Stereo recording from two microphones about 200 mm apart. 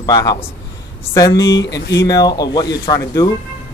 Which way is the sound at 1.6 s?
60° left (ahead or behind).